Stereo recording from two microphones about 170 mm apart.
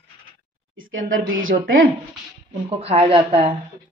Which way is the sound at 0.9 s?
50° right (ahead or behind).